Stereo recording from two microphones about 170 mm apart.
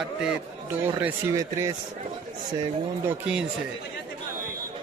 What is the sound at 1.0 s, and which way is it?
Speech, 20° right (ahead or behind).